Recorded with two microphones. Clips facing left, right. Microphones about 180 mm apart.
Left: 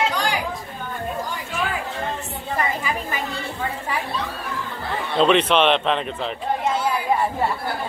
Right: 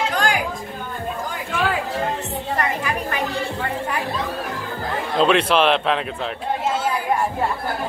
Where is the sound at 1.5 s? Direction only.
80° right.